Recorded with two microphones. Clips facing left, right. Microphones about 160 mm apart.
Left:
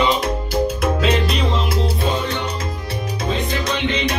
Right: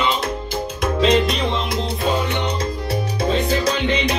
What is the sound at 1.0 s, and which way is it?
Music, 5° left (ahead or behind).